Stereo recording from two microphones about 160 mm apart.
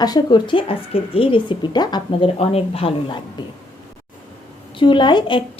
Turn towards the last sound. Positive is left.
turn(degrees=30)  # may be behind; listen again after turning